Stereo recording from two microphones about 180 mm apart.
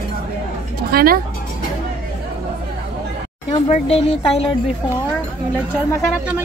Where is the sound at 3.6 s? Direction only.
35° left (ahead or behind).